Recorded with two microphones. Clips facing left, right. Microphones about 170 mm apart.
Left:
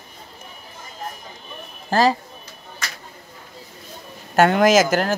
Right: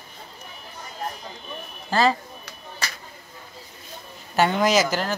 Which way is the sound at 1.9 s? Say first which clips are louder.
Left 3 dB; 40° left (ahead or behind).